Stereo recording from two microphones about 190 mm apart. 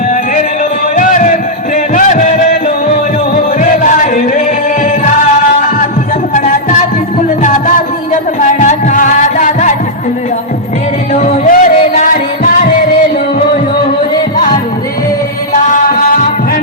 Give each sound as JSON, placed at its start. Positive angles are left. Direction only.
{"t": 0.9, "sound": "music", "side_deg": 45}
{"t": 6.3, "sound": "music", "side_deg": 40}
{"t": 8.1, "sound": "music", "side_deg": 40}
{"t": 11.1, "sound": "music", "side_deg": 40}
{"t": 15.7, "sound": "music", "side_deg": 45}